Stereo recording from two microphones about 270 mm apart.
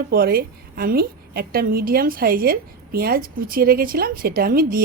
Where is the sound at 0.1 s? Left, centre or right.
Right.